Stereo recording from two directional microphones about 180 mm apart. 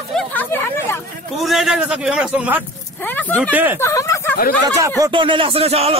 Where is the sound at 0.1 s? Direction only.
10° left (ahead or behind).